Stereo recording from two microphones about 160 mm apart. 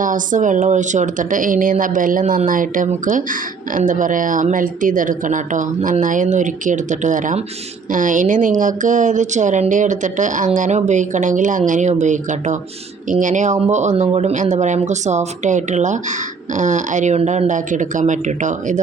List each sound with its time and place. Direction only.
0.0 s a woman's voice: 55° right (ahead or behind)